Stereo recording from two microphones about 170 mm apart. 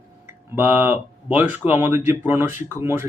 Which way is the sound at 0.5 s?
10° right (ahead or behind).